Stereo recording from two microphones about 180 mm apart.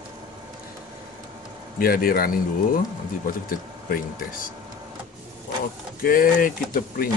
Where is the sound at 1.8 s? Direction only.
55° left (ahead or behind).